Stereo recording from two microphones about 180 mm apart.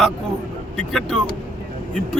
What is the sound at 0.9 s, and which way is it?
Speech, centre (ahead or behind).